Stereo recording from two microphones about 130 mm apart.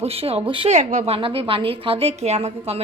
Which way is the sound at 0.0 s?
50° right (ahead or behind).